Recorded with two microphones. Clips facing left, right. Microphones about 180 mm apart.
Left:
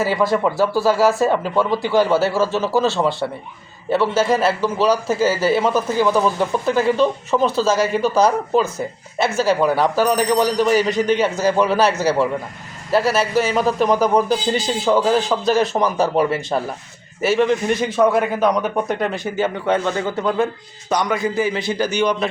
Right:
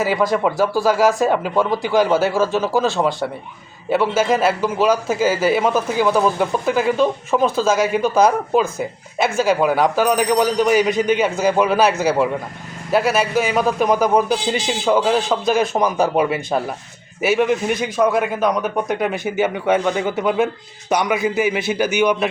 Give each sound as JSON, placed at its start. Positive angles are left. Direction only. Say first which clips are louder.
{"t": 0.0, "sound": "speech", "louder": "even", "side_deg": -15}
{"t": 13.7, "sound": "speech", "louder": "even", "side_deg": -10}
{"t": 15.5, "sound": "speech", "louder": "right 1 dB", "side_deg": -15}
{"t": 16.1, "sound": "speech", "louder": "even", "side_deg": 0}